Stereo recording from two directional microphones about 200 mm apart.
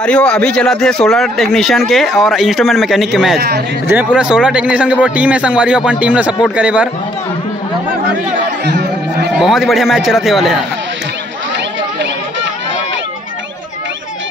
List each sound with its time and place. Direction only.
0.0 s speech: 5° left (ahead or behind)
3.3 s speech: 55° right (ahead or behind)
3.8 s speech: 5° right (ahead or behind)
8.6 s chatter: 55° right (ahead or behind)
9.3 s speech: centre (ahead or behind)